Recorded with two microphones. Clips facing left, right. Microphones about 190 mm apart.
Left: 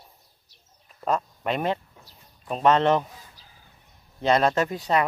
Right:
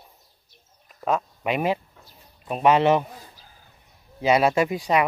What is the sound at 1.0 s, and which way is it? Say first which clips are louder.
Speech: right 1 dB; 5° right (ahead or behind).